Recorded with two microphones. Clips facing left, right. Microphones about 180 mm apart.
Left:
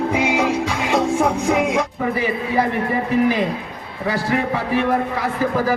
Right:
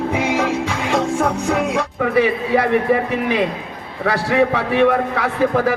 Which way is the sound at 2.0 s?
70° right (ahead or behind).